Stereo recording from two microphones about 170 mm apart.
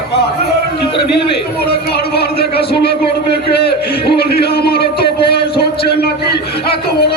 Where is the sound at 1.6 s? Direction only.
70° left (ahead or behind).